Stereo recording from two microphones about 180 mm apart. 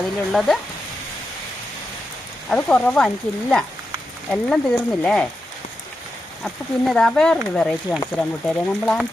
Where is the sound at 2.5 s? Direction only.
10° left (ahead or behind).